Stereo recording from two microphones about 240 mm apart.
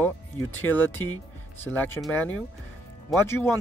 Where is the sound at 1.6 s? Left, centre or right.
Centre.